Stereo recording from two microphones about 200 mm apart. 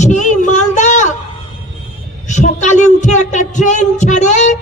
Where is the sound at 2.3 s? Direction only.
35° left (ahead or behind).